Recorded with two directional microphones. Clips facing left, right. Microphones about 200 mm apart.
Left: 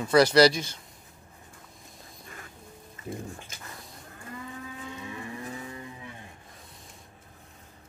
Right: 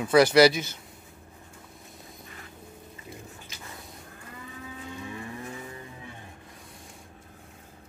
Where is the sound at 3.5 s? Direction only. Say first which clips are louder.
Right 1 dB; 50° left (ahead or behind).